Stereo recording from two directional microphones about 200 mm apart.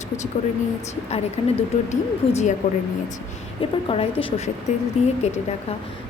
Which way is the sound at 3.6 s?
25° left (ahead or behind).